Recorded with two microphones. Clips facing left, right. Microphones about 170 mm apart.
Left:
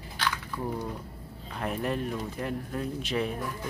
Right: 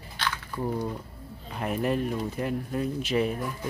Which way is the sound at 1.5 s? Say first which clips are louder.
Right 3 dB; 5° right (ahead or behind).